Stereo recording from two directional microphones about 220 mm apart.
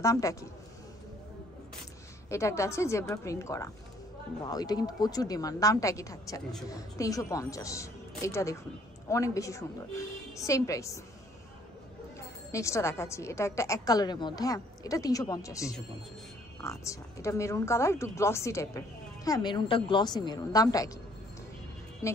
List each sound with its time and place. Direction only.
0.0 s a woman's voice: 15° left (ahead or behind)
2.2 s a woman's voice: 15° left (ahead or behind)
12.4 s a woman's voice: 15° left (ahead or behind)
22.0 s a woman's voice: 15° left (ahead or behind)